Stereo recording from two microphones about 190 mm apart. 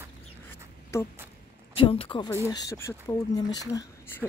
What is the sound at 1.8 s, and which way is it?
Speech, 25° left (ahead or behind).